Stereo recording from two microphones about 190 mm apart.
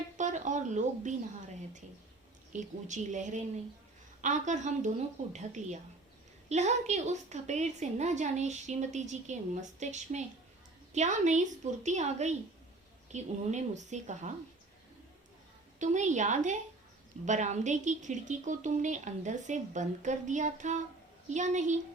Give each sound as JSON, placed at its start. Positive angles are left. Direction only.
{"t": 0.2, "sound": "a sound", "side_deg": -40}
{"t": 2.6, "sound": "a woman's voice", "side_deg": -40}
{"t": 15.8, "sound": "a woman's voice", "side_deg": -40}